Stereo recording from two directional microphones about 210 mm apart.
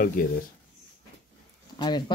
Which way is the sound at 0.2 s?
40° left (ahead or behind).